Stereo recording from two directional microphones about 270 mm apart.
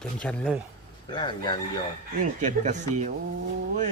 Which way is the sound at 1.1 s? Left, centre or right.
Centre.